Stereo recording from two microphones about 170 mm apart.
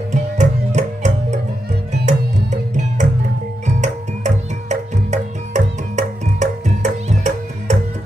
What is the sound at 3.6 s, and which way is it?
Music, 45° right (ahead or behind).